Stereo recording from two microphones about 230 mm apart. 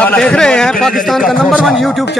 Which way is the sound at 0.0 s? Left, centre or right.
Centre.